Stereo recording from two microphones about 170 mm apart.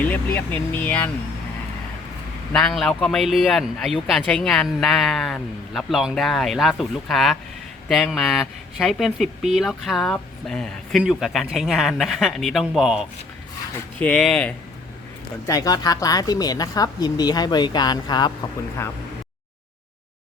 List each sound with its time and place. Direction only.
0.0 s speech: 10° left (ahead or behind)
2.5 s speech: 5° left (ahead or behind)
15.4 s speech: 20° left (ahead or behind)